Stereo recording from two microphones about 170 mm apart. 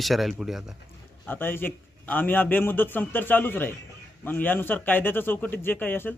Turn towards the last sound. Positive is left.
turn(degrees=10)  # may be behind; listen again after turning